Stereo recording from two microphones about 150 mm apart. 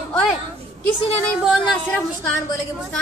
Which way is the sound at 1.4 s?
Centre (ahead or behind).